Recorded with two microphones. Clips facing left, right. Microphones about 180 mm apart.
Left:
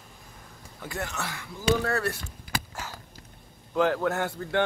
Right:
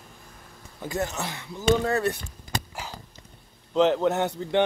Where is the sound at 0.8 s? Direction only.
25° right (ahead or behind).